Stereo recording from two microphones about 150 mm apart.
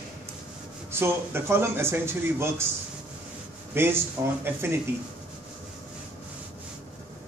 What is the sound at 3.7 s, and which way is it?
A man's voice, 15° right (ahead or behind).